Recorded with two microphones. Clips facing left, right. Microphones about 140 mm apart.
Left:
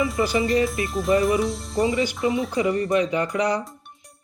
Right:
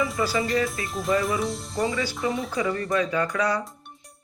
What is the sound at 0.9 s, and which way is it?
Speech, centre (ahead or behind).